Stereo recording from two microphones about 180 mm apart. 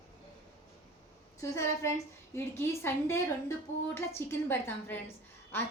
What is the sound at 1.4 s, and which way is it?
A woman's voice, 15° left (ahead or behind).